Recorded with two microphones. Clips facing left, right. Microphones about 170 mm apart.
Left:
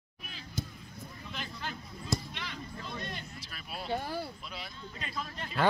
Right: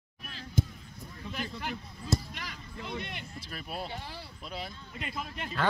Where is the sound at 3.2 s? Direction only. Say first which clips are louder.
Right 3 dB; 50° right (ahead or behind).